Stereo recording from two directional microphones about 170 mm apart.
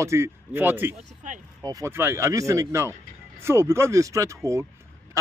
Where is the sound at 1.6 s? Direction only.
20° right (ahead or behind).